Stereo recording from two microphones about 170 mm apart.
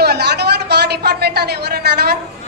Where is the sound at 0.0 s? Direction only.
75° right (ahead or behind).